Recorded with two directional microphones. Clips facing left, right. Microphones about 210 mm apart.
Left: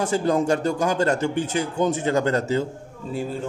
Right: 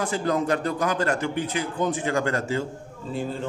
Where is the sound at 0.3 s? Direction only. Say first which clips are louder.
Left 2 dB; 25° left (ahead or behind).